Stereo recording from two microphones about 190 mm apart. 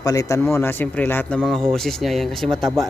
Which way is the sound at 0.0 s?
15° left (ahead or behind).